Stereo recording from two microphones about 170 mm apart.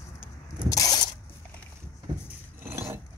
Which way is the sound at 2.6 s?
15° right (ahead or behind).